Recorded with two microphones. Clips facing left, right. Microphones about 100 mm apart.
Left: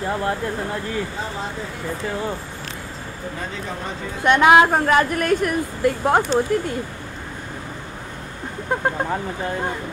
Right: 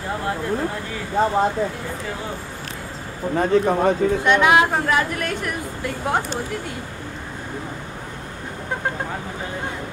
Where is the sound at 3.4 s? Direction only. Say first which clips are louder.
Right 15 dB; 55° right (ahead or behind).